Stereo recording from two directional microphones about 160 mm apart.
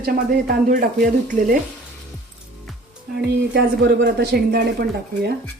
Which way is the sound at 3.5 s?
85° right.